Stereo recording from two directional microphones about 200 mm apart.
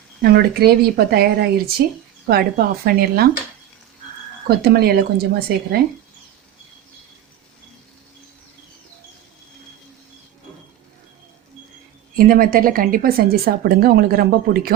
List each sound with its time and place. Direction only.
0.2 s a woman's voice: 50° right (ahead or behind)
4.4 s a woman's voice: 50° right (ahead or behind)
12.1 s a woman's voice: 45° right (ahead or behind)